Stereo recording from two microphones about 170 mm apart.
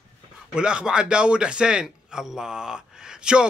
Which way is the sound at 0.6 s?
5° right (ahead or behind).